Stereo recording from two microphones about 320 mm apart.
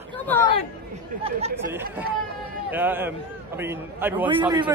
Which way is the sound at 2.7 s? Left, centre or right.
Centre.